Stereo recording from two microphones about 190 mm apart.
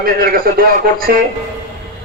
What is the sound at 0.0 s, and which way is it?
A man's voice, 50° right (ahead or behind).